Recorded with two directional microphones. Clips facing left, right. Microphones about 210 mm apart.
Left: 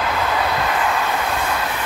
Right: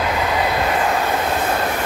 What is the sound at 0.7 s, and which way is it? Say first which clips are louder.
Train: right 2 dB; 35° right (ahead or behind).